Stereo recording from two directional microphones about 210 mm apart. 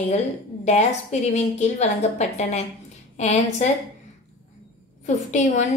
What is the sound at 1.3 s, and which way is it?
A woman's voice, 30° left (ahead or behind).